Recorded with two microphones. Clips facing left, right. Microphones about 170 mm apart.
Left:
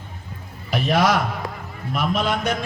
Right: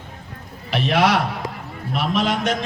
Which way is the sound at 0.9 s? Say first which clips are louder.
Right 1 dB; 65° right (ahead or behind).